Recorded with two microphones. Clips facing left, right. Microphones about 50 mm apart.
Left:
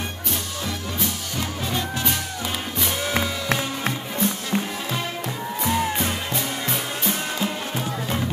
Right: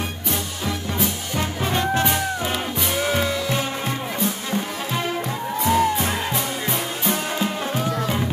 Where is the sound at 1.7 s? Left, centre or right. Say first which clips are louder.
Right 7 dB; right.